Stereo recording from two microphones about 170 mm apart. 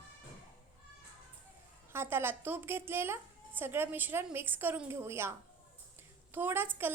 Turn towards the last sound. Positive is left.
turn(degrees=-10)  # may be behind; listen again after turning